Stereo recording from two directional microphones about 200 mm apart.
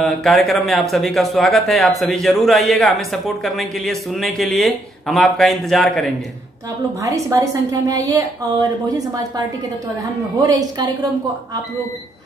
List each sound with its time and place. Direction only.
0.0 s speech: centre (ahead or behind)
7.0 s a woman's voice: 15° right (ahead or behind)
10.4 s a woman's voice: 20° right (ahead or behind)